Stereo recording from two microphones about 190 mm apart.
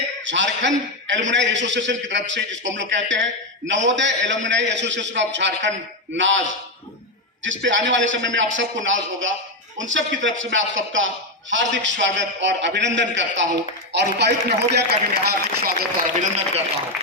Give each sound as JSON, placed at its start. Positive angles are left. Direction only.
{"t": 0.3, "sound": "a man's voice", "side_deg": -75}
{"t": 7.4, "sound": "a man's voice", "side_deg": -75}
{"t": 11.5, "sound": "a man's voice", "side_deg": -70}